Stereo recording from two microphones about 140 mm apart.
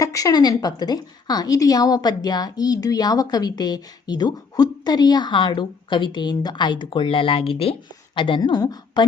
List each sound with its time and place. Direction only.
0.0 s a woman's voice: 25° left (ahead or behind)